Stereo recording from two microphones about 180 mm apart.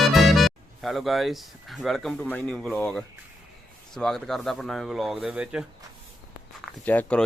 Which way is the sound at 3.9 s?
Centre (ahead or behind).